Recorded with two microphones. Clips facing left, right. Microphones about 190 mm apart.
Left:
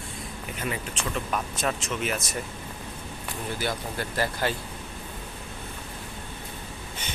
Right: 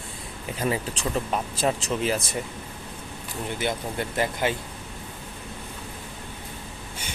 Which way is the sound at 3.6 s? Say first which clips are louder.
Right 4 dB; 20° right (ahead or behind).